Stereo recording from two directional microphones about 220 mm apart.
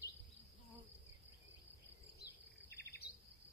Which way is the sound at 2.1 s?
45° left (ahead or behind).